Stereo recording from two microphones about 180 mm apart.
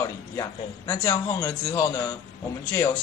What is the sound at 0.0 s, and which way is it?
A man's voice, 15° left (ahead or behind).